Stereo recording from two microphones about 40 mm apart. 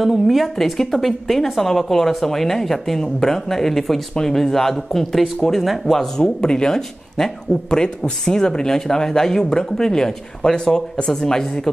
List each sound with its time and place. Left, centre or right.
0.0 s speech: centre
6.1 s speech: centre